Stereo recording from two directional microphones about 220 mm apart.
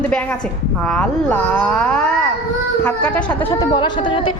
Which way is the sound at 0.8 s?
5° left (ahead or behind).